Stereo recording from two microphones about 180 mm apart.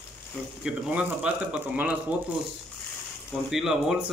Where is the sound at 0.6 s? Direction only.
5° right (ahead or behind).